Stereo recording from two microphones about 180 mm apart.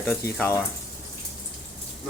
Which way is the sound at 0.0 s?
15° left (ahead or behind).